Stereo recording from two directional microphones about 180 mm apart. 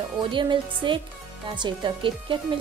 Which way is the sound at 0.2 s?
25° right (ahead or behind).